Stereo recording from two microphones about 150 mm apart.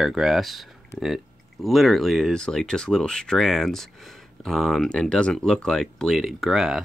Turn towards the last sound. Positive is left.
turn(degrees=-5)  # may be behind; listen again after turning